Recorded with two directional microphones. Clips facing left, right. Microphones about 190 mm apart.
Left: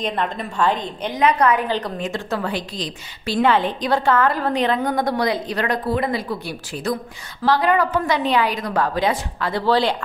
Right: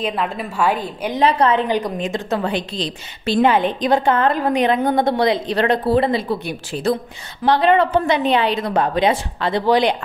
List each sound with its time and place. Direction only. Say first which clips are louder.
0.0 s a woman's voice: right 1 dB; 5° right (ahead or behind)
1.2 s a woman's voice: right 1 dB; 25° right (ahead or behind)
1.7 s a woman's voice: right 3 dB; 15° right (ahead or behind)